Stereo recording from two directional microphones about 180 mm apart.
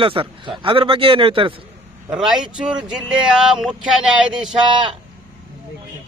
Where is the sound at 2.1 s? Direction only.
5° right (ahead or behind).